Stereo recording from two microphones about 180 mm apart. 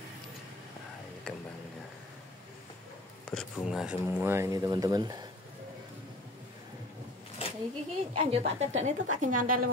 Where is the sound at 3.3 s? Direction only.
Centre (ahead or behind).